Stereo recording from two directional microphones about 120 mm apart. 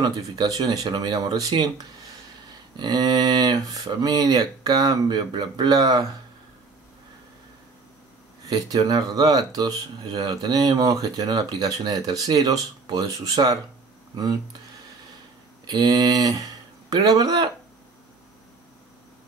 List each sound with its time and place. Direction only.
0.0 s speech: 35° right (ahead or behind)
2.8 s speech: 35° right (ahead or behind)
8.5 s speech: 30° right (ahead or behind)
15.6 s speech: 35° right (ahead or behind)